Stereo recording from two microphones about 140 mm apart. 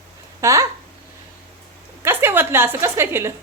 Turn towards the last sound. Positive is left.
turn(degrees=-20)  # may be behind; listen again after turning